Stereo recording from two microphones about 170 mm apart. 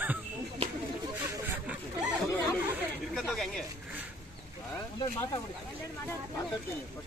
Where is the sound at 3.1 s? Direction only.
Centre (ahead or behind).